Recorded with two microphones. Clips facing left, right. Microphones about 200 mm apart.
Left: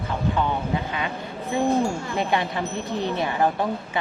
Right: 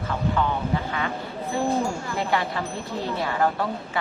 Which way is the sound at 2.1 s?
20° left (ahead or behind).